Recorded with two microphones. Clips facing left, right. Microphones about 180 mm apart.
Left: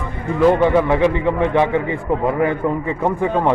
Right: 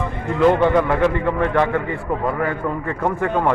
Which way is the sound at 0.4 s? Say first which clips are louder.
Left 1 dB; 5° left (ahead or behind).